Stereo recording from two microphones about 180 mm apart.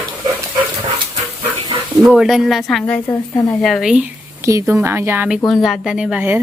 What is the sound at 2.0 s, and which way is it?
A woman's voice, 5° right (ahead or behind).